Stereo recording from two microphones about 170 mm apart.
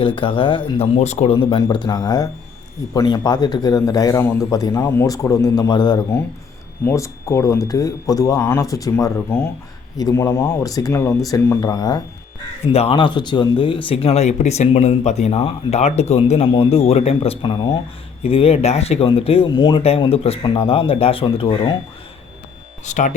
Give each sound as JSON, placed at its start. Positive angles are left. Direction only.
{"t": 0.0, "sound": "a man's voice", "side_deg": 30}
{"t": 12.6, "sound": "speech", "side_deg": 35}
{"t": 22.9, "sound": "speech", "side_deg": 45}